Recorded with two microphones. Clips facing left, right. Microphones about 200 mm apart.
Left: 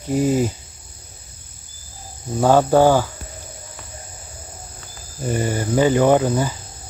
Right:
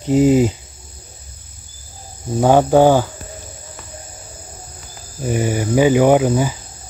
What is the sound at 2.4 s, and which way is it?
Speech, 15° right (ahead or behind).